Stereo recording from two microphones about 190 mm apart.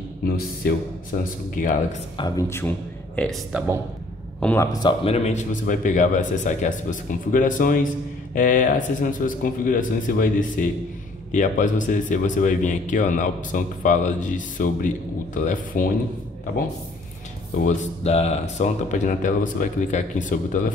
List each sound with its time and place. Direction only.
1.1 s speech: 50° left (ahead or behind)
2.1 s speech: 20° left (ahead or behind)
3.5 s speech: 10° right (ahead or behind)
4.4 s a man's voice: 10° left (ahead or behind)
4.7 s speech: 30° left (ahead or behind); by 15.9 s 45° left (ahead or behind)
17.6 s speech: 35° left (ahead or behind)